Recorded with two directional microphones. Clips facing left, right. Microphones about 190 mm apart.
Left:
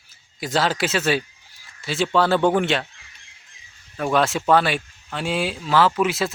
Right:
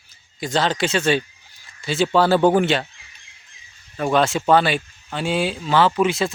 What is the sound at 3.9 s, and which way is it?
Speech, centre (ahead or behind).